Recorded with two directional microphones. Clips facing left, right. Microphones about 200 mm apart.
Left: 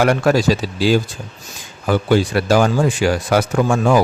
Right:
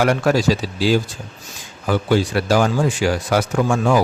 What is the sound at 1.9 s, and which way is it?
A man's voice, 60° left (ahead or behind).